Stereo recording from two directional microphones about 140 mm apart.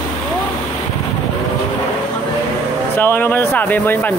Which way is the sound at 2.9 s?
15° left (ahead or behind).